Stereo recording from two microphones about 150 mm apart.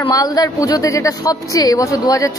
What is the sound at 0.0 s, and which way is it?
A man's voice, 25° left (ahead or behind).